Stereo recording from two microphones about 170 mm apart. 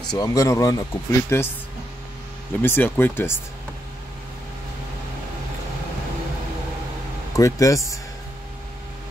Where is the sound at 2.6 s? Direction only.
10° left (ahead or behind).